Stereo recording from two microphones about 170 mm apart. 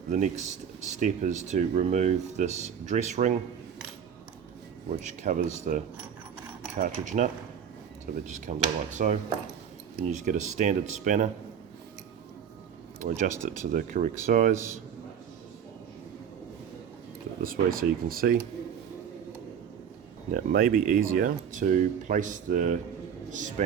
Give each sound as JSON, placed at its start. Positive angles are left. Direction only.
{"t": 0.1, "sound": "speech", "side_deg": -45}
{"t": 5.0, "sound": "speech", "side_deg": -45}
{"t": 13.0, "sound": "speech", "side_deg": -50}
{"t": 17.4, "sound": "speech", "side_deg": -60}
{"t": 20.3, "sound": "speech", "side_deg": -65}